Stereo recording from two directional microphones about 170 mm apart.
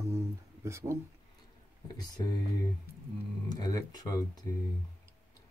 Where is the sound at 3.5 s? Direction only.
25° left (ahead or behind).